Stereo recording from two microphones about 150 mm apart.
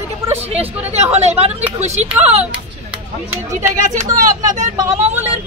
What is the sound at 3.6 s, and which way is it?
Speech, 55° right (ahead or behind).